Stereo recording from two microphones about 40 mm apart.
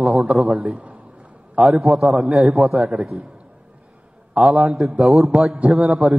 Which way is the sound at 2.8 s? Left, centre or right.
Right.